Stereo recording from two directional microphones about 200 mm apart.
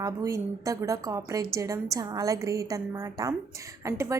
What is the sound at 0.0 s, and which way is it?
A woman's voice, 15° right (ahead or behind).